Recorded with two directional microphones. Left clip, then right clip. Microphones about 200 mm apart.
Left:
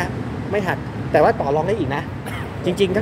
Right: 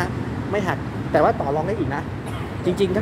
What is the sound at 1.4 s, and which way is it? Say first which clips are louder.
Speech: left 3 dB; 20° left (ahead or behind).